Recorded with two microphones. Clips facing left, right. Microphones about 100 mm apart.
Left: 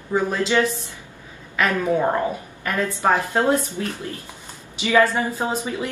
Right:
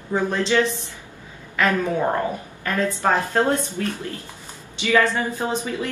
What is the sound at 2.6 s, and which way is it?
A woman's voice, 15° left (ahead or behind).